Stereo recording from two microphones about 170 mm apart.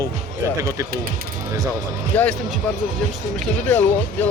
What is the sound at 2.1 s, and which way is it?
Speech, 10° left (ahead or behind).